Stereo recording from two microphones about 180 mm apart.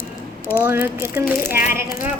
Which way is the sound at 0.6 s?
15° right (ahead or behind).